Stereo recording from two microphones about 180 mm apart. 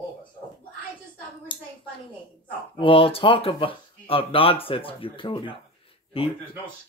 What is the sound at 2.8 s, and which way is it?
Speech, 30° left (ahead or behind).